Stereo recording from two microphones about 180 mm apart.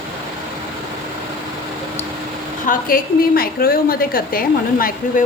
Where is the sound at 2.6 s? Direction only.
55° left (ahead or behind).